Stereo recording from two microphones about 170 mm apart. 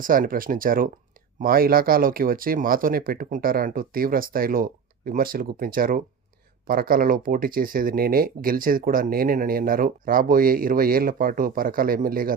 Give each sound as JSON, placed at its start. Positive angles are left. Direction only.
{"t": 0.0, "sound": "speech", "side_deg": -55}